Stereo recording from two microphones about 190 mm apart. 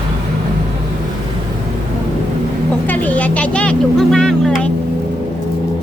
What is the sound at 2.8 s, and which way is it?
Speech, 10° left (ahead or behind).